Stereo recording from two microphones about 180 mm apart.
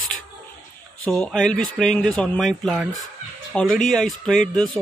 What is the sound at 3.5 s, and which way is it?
Speech, centre (ahead or behind).